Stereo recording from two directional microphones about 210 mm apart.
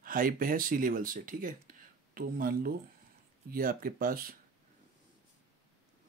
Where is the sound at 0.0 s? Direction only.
40° right (ahead or behind).